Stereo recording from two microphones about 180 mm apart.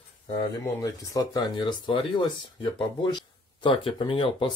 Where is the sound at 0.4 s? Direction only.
20° left (ahead or behind).